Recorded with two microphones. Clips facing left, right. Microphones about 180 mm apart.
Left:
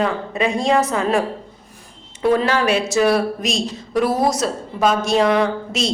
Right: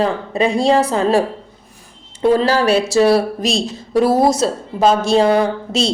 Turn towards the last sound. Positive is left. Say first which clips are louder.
# right 2 dB
turn(degrees=-30)  # may be behind; listen again after turning